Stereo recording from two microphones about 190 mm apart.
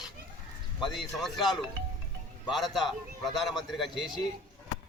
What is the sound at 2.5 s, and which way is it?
A man's voice, centre (ahead or behind).